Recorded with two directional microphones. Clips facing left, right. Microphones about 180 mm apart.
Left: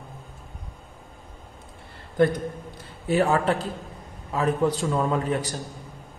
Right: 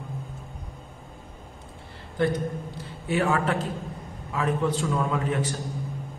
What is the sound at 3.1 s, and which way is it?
A man's voice, 35° left (ahead or behind).